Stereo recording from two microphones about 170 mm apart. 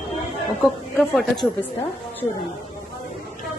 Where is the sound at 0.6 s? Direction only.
Centre (ahead or behind).